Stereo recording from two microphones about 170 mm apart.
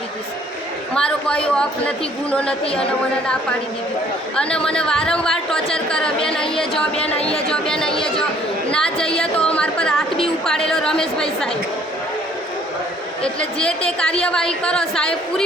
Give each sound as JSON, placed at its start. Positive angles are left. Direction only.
{"t": 0.9, "sound": "a woman's voice", "side_deg": 5}
{"t": 4.4, "sound": "a woman's voice", "side_deg": 5}
{"t": 7.2, "sound": "speech", "side_deg": 35}
{"t": 7.5, "sound": "a woman's voice", "side_deg": 5}
{"t": 13.2, "sound": "a woman's voice", "side_deg": 5}